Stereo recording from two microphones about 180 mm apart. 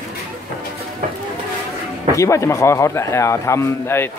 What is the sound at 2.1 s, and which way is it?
A man's voice, 15° left (ahead or behind).